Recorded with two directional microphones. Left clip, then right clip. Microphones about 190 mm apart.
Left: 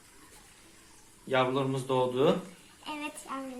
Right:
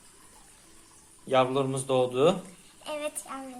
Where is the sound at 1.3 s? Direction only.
60° right (ahead or behind).